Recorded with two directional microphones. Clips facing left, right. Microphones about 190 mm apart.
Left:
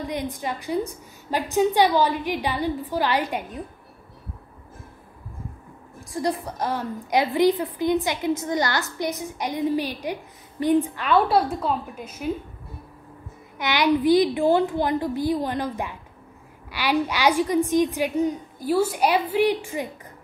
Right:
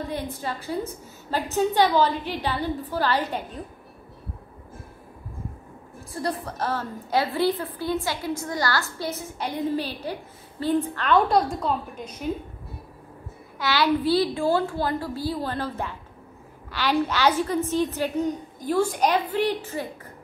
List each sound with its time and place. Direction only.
0.0 s a woman's voice: 15° left (ahead or behind)
6.1 s a woman's voice: 15° left (ahead or behind)
13.6 s a woman's voice: 20° left (ahead or behind)